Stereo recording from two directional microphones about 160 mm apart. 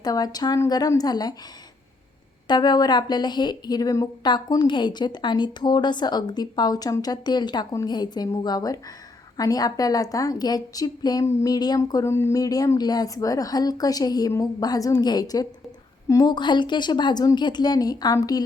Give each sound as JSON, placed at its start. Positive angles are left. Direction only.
{"t": 0.0, "sound": "a woman's voice", "side_deg": 25}
{"t": 2.5, "sound": "a woman's voice", "side_deg": 25}